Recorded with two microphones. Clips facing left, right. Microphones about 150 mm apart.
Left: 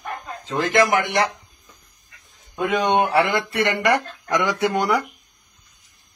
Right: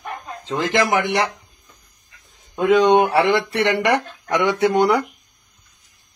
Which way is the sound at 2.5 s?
25° right (ahead or behind).